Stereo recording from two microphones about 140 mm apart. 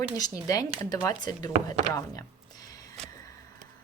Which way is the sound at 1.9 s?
20° left (ahead or behind).